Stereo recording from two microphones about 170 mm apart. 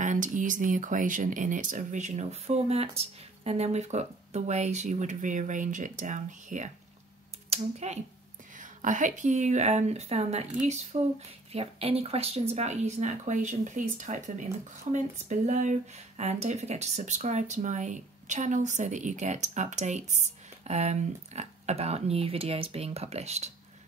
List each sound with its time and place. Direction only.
0.0 s speech: 45° right (ahead or behind)